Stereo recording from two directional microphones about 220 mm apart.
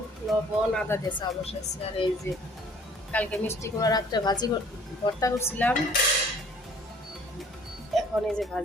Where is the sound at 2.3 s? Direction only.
10° left (ahead or behind).